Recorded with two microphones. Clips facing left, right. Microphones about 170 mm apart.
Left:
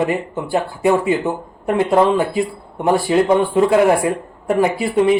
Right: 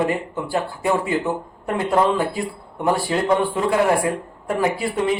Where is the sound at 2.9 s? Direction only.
20° left (ahead or behind).